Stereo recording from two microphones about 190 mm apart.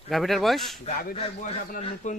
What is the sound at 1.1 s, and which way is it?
A man's voice, 30° left (ahead or behind).